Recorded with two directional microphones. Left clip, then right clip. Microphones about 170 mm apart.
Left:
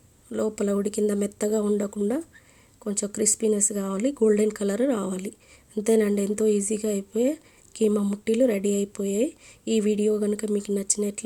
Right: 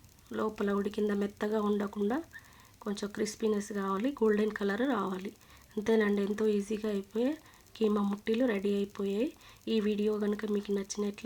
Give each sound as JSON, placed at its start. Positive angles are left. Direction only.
{"t": 0.5, "sound": "speech", "side_deg": 45}